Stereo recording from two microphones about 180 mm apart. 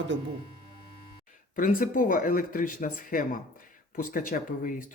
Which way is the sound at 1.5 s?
50° left (ahead or behind).